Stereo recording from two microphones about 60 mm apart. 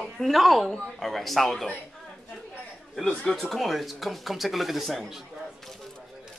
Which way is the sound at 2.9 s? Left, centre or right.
Centre.